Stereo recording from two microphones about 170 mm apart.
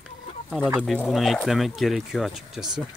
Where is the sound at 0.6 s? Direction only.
10° right (ahead or behind).